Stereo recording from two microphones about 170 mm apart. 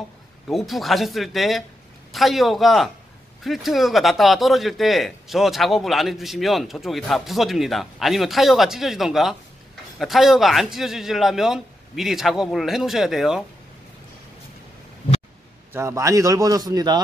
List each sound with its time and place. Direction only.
0.5 s speech: centre (ahead or behind)
15.7 s speech: 15° right (ahead or behind)